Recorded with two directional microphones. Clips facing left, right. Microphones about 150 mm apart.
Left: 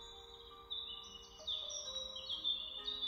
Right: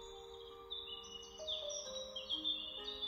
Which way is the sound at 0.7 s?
45° right (ahead or behind).